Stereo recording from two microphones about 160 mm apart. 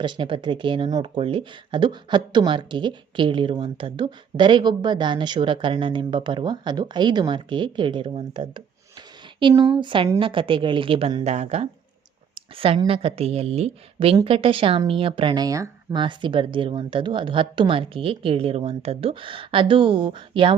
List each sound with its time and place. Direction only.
0.0 s speech: 30° right (ahead or behind)
12.3 s a sound: 35° right (ahead or behind)
12.9 s speech: 35° right (ahead or behind)